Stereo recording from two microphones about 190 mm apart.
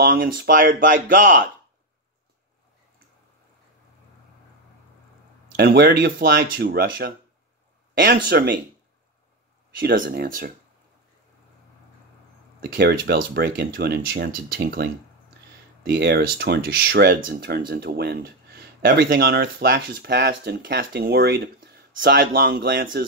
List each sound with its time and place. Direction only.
0.0 s speech: 55° right (ahead or behind)
5.6 s speech: 55° right (ahead or behind)
8.3 s speech: 55° right (ahead or behind)
9.8 s speech: 55° right (ahead or behind)
12.6 s speech: 50° right (ahead or behind)